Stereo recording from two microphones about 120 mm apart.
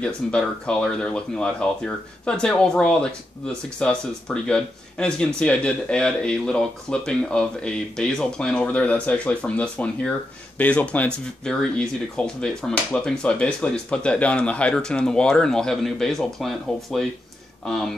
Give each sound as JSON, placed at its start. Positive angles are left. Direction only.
{"t": 0.0, "sound": "speech", "side_deg": 10}